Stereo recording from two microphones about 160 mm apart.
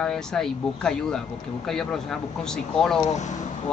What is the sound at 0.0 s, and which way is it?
Speech, 5° left (ahead or behind).